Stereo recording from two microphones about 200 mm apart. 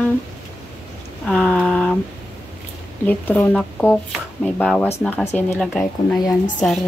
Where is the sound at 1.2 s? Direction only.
5° left (ahead or behind).